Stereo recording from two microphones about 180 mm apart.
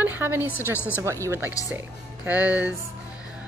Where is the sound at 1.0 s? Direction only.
15° right (ahead or behind).